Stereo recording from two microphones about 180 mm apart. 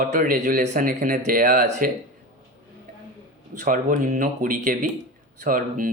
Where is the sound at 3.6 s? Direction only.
45° right (ahead or behind).